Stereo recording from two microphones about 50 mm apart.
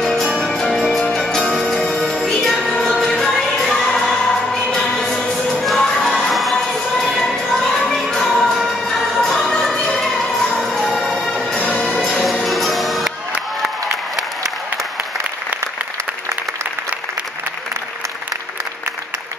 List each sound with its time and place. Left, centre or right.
0.7 s music: centre
5.1 s music: centre
5.8 s crowd: centre
6.3 s a sound: centre
8.8 s music: centre
11.5 s music: left
12.0 s music: centre
12.4 s music: centre